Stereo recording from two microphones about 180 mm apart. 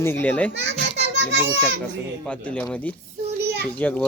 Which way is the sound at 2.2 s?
5° left (ahead or behind).